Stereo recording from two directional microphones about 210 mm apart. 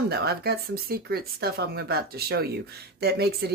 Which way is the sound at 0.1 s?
50° right (ahead or behind).